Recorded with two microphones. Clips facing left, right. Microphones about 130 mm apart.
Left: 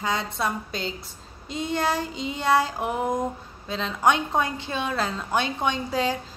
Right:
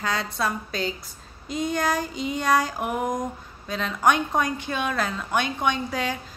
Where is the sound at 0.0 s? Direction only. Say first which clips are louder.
Even; 20° left (ahead or behind).